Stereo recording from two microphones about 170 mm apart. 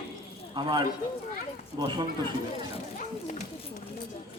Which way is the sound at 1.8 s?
25° right (ahead or behind).